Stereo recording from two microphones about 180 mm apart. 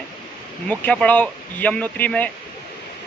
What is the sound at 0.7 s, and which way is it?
Speech, 5° left (ahead or behind).